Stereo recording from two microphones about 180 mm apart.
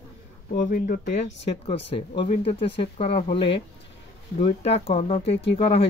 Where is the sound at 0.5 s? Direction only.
50° left (ahead or behind).